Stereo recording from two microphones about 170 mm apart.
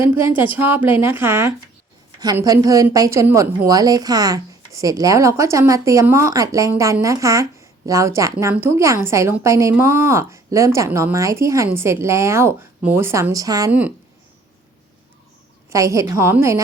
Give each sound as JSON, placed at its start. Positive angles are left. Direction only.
{"t": 0.0, "sound": "a woman's voice", "side_deg": -15}
{"t": 13.7, "sound": "a woman's voice", "side_deg": -10}
{"t": 15.7, "sound": "a woman's voice", "side_deg": -20}